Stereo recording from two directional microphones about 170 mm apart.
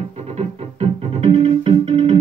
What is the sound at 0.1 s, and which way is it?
Music, 40° right (ahead or behind).